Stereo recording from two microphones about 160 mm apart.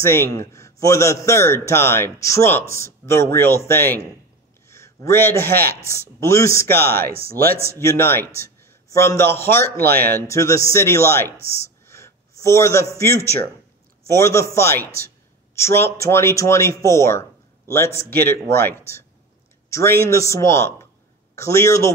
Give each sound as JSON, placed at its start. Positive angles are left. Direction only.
{"t": 0.0, "sound": "a man's voice", "side_deg": 15}
{"t": 6.9, "sound": "speech", "side_deg": -70}
{"t": 7.5, "sound": "speech", "side_deg": -15}
{"t": 7.8, "sound": "speech", "side_deg": 15}
{"t": 9.8, "sound": "speech", "side_deg": -75}
{"t": 10.2, "sound": "speech", "side_deg": 20}
{"t": 11.4, "sound": "a sound", "side_deg": 15}
{"t": 12.9, "sound": "a man's voice", "side_deg": 15}